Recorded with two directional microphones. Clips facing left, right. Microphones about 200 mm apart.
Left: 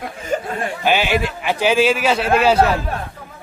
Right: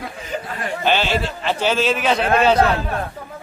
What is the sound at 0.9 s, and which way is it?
A man's voice, 10° left (ahead or behind).